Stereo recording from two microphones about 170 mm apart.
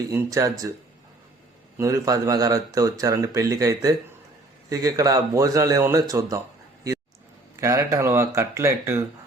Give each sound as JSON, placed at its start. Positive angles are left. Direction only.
{"t": 0.1, "sound": "speech", "side_deg": -20}
{"t": 1.8, "sound": "speech", "side_deg": -20}
{"t": 7.6, "sound": "speech", "side_deg": -20}